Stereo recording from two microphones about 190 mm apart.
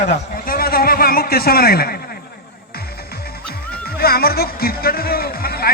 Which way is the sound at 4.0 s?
55° left (ahead or behind).